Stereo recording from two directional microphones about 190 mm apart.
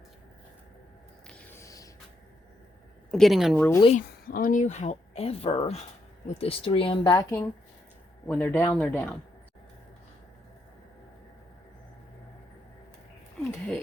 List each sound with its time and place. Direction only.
1.3 s music: 15° left (ahead or behind)
3.1 s speech: centre (ahead or behind)
4.3 s speech: 45° left (ahead or behind); by 9.1 s 10° left (ahead or behind)
13.4 s a sound: 5° left (ahead or behind)